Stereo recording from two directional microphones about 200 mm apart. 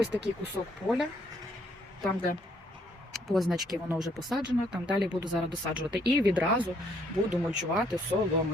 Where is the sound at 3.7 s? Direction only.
Centre (ahead or behind).